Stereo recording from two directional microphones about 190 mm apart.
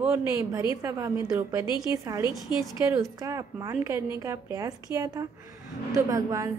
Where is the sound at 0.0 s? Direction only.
15° right (ahead or behind).